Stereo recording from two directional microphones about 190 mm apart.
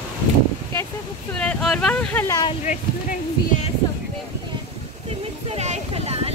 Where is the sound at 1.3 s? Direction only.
5° left (ahead or behind).